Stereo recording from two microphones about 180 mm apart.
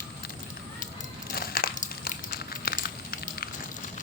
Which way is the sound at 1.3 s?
55° left (ahead or behind).